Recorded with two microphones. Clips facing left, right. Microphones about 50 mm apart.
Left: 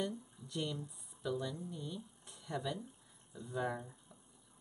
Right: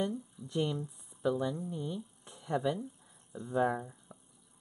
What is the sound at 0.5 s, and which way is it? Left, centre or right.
Speech, right.